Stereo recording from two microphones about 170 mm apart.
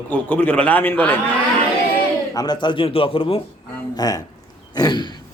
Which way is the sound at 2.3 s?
25° left (ahead or behind).